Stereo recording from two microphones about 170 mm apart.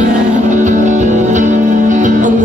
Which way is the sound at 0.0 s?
45° right (ahead or behind).